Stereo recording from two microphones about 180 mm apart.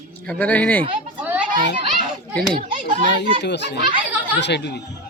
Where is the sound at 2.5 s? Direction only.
55° right (ahead or behind).